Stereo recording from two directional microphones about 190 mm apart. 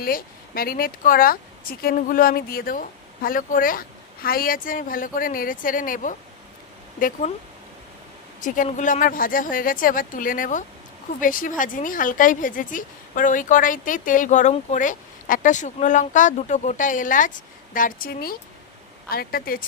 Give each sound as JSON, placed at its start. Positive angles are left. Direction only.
{"t": 0.0, "sound": "speech", "side_deg": 50}
{"t": 8.4, "sound": "speech", "side_deg": 45}